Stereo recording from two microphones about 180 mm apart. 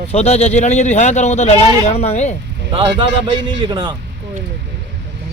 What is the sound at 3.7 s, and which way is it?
Speech, 25° right (ahead or behind).